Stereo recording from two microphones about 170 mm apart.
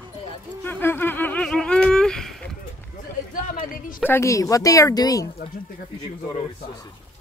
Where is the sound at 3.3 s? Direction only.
55° left (ahead or behind).